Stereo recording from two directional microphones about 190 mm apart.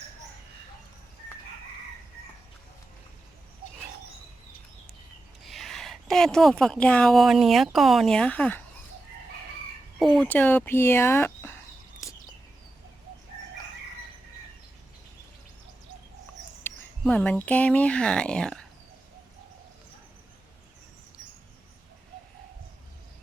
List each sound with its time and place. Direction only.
5.5 s speech: centre (ahead or behind)
10.0 s speech: centre (ahead or behind)
17.0 s speech: 5° left (ahead or behind)